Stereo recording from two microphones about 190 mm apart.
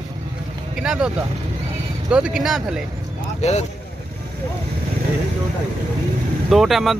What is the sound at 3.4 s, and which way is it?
Speech, 35° left (ahead or behind).